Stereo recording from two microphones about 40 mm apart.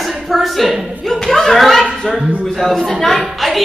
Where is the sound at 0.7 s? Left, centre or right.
Right.